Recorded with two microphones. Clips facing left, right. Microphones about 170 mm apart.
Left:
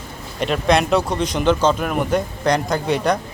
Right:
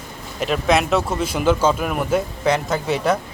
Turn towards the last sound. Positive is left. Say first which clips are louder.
# left 1 dB
turn(degrees=-5)  # may be behind; listen again after turning